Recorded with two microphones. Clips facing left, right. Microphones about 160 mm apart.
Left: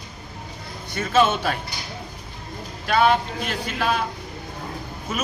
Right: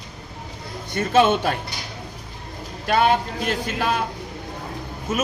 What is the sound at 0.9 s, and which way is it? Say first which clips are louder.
Speech: right 2 dB; 55° right (ahead or behind).